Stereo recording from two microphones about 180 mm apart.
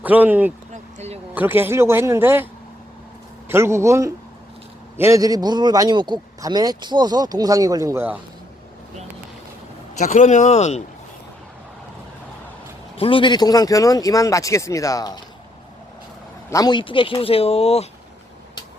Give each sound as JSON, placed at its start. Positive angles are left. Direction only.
{"t": 0.0, "sound": "a man's voice", "side_deg": -10}
{"t": 0.7, "sound": "a sound", "side_deg": -40}
{"t": 1.4, "sound": "a man's voice", "side_deg": -10}
{"t": 3.5, "sound": "a man's voice", "side_deg": -15}
{"t": 10.0, "sound": "speech", "side_deg": 45}
{"t": 13.0, "sound": "speech", "side_deg": 30}
{"t": 16.5, "sound": "speech", "side_deg": 20}